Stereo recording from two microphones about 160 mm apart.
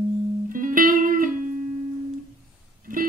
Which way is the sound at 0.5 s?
60° right (ahead or behind).